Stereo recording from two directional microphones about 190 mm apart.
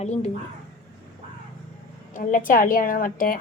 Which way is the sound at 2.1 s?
45° left (ahead or behind).